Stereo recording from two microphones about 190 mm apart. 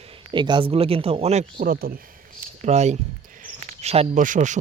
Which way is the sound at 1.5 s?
50° right (ahead or behind).